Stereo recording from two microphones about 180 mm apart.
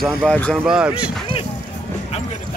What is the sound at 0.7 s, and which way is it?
Speech, 5° right (ahead or behind).